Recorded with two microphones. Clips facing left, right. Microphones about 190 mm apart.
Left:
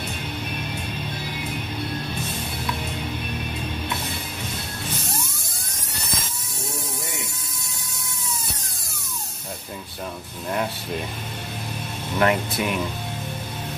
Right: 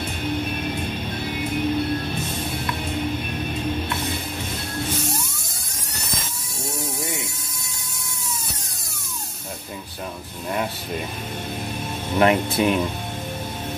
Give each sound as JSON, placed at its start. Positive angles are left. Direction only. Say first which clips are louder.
{"t": 12.2, "sound": "speech", "louder": "right 3 dB", "side_deg": -25}